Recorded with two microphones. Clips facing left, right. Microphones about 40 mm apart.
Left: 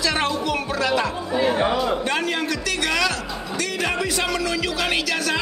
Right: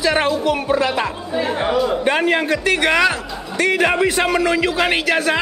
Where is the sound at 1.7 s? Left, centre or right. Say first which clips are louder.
Right 4 dB; centre.